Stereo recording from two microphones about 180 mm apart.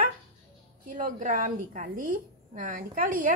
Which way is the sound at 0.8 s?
45° right (ahead or behind).